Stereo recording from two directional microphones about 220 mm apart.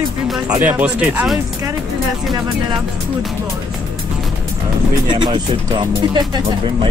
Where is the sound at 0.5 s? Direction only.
10° right (ahead or behind).